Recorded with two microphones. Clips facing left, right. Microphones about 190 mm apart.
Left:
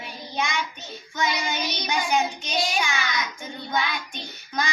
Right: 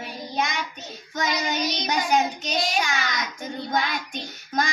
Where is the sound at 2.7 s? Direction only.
40° right (ahead or behind).